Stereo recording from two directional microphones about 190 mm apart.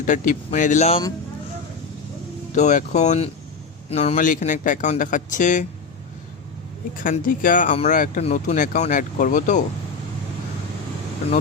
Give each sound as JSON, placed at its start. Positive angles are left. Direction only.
{"t": 0.0, "sound": "speech", "side_deg": 40}
{"t": 2.6, "sound": "speech", "side_deg": 40}
{"t": 7.0, "sound": "speech", "side_deg": 45}